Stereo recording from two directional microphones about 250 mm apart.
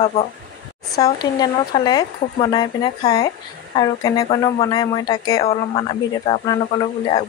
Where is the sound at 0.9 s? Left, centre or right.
Centre.